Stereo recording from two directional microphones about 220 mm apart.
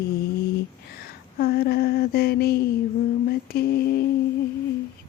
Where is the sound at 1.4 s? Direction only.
45° left (ahead or behind).